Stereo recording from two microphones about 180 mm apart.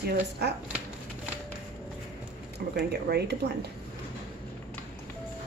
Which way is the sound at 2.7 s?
65° right (ahead or behind).